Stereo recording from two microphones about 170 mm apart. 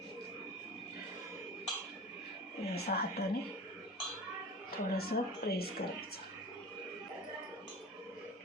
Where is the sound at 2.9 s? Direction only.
55° left (ahead or behind).